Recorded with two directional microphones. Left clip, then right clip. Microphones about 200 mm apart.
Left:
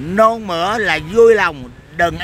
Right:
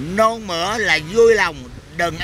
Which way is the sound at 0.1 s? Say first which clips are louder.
Left 4 dB; 25° left (ahead or behind).